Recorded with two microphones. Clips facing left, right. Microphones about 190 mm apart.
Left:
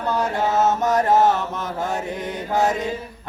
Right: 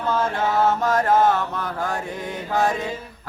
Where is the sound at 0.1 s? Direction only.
15° left (ahead or behind).